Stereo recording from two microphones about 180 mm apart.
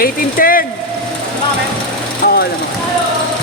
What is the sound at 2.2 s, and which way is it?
Vehicle, 55° left (ahead or behind).